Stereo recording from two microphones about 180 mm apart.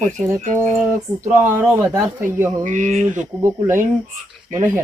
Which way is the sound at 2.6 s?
45° right (ahead or behind).